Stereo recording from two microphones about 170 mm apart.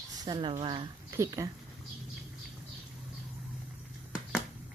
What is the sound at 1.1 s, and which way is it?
Speech, 20° right (ahead or behind).